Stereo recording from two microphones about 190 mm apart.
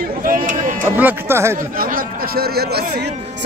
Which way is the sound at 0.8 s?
10° right (ahead or behind).